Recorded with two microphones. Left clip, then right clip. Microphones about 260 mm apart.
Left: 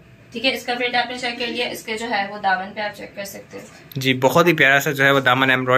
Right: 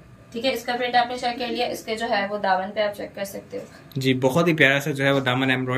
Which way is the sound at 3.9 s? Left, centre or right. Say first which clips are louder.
Left 5 dB; centre.